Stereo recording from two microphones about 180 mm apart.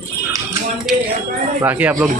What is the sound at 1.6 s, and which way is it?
Speech, 10° right (ahead or behind).